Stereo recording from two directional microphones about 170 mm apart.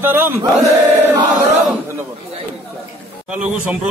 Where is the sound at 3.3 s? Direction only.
5° right (ahead or behind).